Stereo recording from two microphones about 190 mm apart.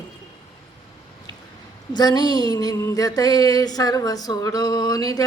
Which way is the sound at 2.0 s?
20° left (ahead or behind).